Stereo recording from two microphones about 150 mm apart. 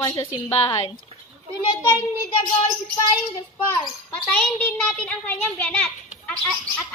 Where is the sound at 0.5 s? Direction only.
35° left (ahead or behind).